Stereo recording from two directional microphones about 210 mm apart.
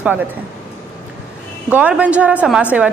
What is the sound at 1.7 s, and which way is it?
A woman's voice, 5° right (ahead or behind).